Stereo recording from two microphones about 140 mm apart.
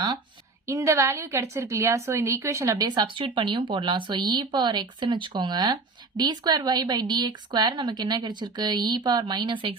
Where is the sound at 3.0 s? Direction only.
35° right (ahead or behind).